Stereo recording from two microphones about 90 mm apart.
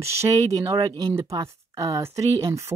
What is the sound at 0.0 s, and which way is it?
Speech, 30° right (ahead or behind).